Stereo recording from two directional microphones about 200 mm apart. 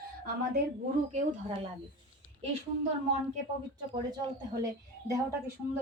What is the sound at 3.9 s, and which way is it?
Speech, 25° right (ahead or behind).